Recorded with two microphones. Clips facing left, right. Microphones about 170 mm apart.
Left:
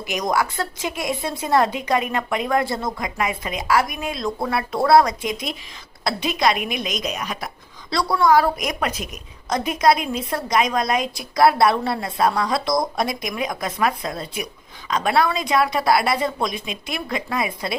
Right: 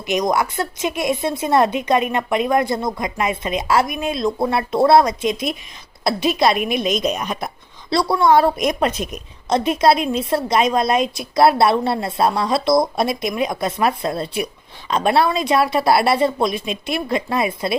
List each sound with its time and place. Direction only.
0.0 s speech: 20° right (ahead or behind)
6.6 s a woman's voice: 15° left (ahead or behind)
7.0 s speech: 30° right (ahead or behind)